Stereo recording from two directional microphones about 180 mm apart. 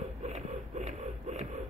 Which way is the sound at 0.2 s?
40° right (ahead or behind).